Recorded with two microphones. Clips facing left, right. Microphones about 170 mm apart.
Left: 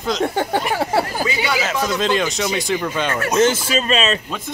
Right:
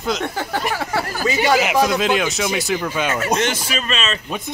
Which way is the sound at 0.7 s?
30° left (ahead or behind).